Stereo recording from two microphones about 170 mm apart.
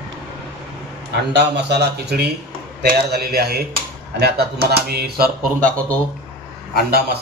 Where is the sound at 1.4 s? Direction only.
80° right; by 5.8 s 60° right (ahead or behind).